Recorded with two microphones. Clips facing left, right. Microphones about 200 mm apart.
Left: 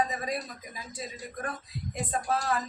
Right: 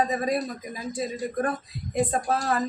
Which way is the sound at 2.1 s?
45° right (ahead or behind).